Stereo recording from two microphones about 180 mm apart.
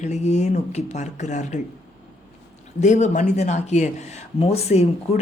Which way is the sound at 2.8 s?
40° left (ahead or behind).